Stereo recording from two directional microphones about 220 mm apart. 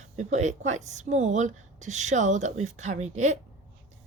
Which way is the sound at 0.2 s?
30° right (ahead or behind).